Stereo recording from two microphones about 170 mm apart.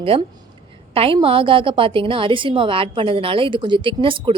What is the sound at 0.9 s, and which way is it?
A woman's voice, 35° right (ahead or behind).